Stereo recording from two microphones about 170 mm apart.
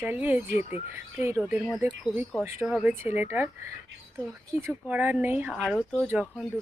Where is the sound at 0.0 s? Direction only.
10° right (ahead or behind).